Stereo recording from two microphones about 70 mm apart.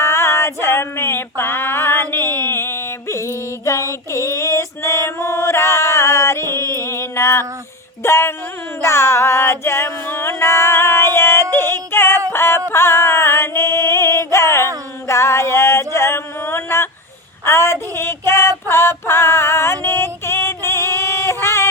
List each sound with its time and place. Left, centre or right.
0.0 s female singing: left
4.1 s a sound: left
8.8 s music: left
11.5 s yodeling: left
12.3 s music: left
15.0 s a sound: left
17.4 s child singing: left